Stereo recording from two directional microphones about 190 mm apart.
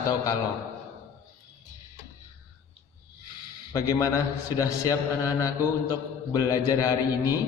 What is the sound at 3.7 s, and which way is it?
A man's voice, 15° left (ahead or behind).